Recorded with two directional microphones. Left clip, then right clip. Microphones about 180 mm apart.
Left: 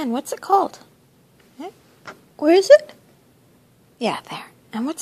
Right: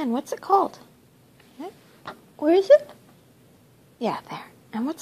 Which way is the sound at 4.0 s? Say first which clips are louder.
Left 4 dB; 10° left (ahead or behind).